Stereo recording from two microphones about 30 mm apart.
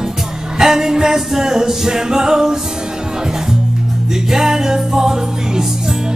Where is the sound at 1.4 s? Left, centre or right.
Centre.